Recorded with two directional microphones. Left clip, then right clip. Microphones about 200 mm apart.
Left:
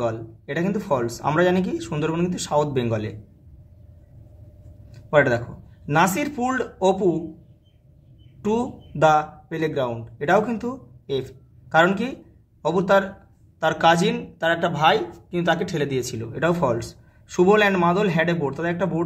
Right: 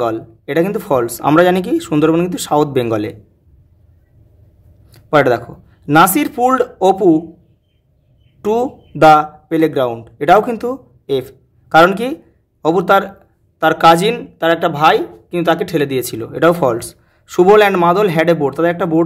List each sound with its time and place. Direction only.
0.0 s speech: 50° right (ahead or behind)
5.1 s speech: 50° right (ahead or behind)
8.4 s speech: 50° right (ahead or behind)